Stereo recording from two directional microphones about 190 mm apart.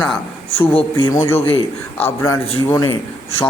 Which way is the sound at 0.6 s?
30° left (ahead or behind).